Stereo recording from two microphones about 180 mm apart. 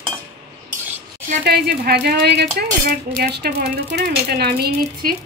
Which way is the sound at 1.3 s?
60° right (ahead or behind).